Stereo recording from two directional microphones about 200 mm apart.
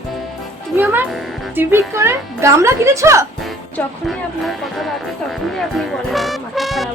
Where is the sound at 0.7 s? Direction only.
10° right (ahead or behind).